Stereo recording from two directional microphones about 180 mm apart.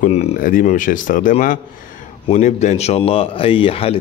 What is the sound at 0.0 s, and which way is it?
Speech, 35° left (ahead or behind).